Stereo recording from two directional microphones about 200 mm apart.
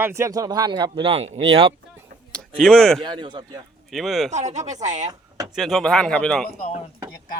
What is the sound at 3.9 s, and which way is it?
Speech, centre (ahead or behind).